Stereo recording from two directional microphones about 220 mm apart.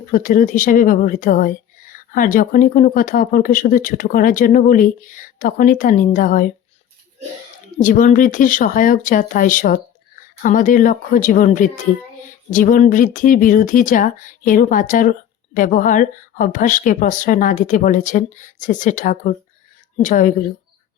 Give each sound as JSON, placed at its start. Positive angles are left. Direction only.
{"t": 0.0, "sound": "speech", "side_deg": 40}
{"t": 7.8, "sound": "speech", "side_deg": 35}